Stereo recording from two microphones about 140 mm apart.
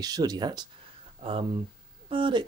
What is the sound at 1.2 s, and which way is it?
Speech, 45° right (ahead or behind).